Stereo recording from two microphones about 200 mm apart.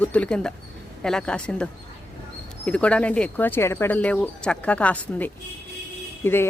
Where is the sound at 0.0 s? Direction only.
5° left (ahead or behind).